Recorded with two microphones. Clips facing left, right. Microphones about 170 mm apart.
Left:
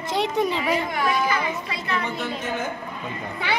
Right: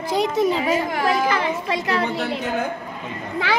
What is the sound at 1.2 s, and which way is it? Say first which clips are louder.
A child's voice: right 4 dB; 90° right.